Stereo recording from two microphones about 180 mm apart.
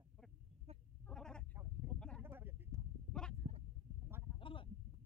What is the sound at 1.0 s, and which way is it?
Sheep, 5° left (ahead or behind).